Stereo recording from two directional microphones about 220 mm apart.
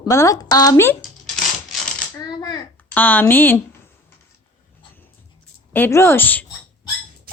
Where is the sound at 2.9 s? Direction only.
10° left (ahead or behind).